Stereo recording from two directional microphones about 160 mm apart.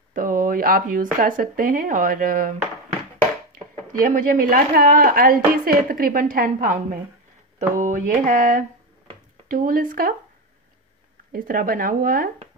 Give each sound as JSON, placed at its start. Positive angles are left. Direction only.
{"t": 0.1, "sound": "a woman's voice", "side_deg": -60}
{"t": 4.0, "sound": "a woman's voice", "side_deg": -60}
{"t": 11.3, "sound": "a woman's voice", "side_deg": -60}